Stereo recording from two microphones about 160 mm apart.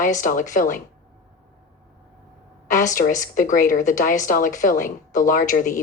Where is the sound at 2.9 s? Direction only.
55° left (ahead or behind).